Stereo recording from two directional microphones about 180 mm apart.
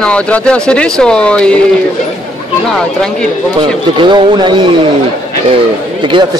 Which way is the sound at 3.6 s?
25° right (ahead or behind).